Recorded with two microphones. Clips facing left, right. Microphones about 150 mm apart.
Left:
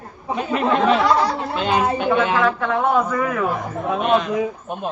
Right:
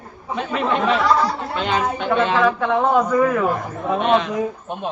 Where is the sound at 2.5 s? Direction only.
10° right (ahead or behind).